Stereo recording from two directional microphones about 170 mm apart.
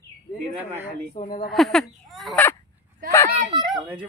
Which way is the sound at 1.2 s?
50° left (ahead or behind).